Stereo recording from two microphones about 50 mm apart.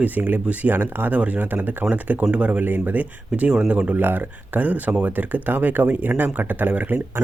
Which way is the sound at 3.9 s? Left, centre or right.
Right.